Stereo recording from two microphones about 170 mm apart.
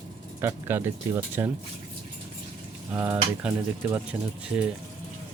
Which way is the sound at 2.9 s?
15° right (ahead or behind).